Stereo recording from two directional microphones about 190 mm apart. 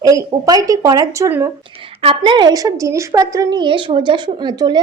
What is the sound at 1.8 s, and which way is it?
A woman's voice, 30° right (ahead or behind).